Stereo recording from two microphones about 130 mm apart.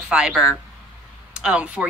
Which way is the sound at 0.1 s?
5° right (ahead or behind).